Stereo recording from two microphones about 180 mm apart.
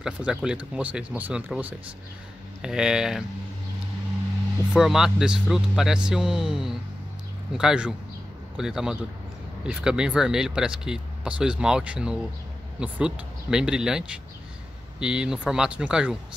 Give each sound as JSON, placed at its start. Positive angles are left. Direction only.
{"t": 0.0, "sound": "speech", "side_deg": -5}
{"t": 4.7, "sound": "speech", "side_deg": 0}